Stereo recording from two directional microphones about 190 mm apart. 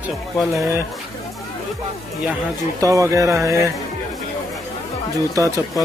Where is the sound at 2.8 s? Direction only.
15° right (ahead or behind).